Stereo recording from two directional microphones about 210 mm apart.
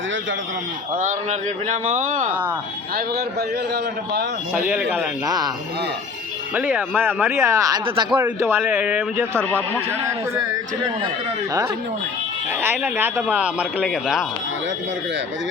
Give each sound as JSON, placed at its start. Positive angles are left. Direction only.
{"t": 0.9, "sound": "speech", "side_deg": -35}
{"t": 4.7, "sound": "speech", "side_deg": 0}
{"t": 5.2, "sound": "speech", "side_deg": -20}
{"t": 6.5, "sound": "speech", "side_deg": -10}
{"t": 8.2, "sound": "speech", "side_deg": -10}
{"t": 9.4, "sound": "a man's voice", "side_deg": 10}
{"t": 12.8, "sound": "speech", "side_deg": -10}